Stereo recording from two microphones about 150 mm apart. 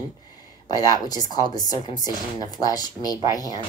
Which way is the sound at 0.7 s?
25° left (ahead or behind).